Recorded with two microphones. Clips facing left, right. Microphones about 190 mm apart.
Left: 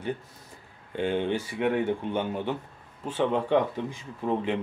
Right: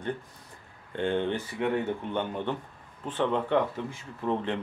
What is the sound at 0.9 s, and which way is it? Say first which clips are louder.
Speech: left 1 dB; 10° left (ahead or behind).